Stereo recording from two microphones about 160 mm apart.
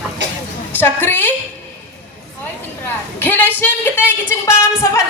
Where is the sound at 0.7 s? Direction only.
10° left (ahead or behind).